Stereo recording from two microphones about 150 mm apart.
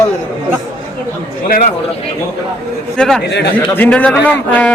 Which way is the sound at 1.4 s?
70° left (ahead or behind).